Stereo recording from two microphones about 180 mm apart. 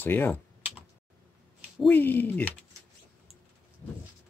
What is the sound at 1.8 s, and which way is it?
Speech, 10° left (ahead or behind).